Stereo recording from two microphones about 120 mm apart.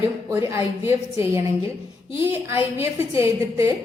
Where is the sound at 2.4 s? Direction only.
20° right (ahead or behind).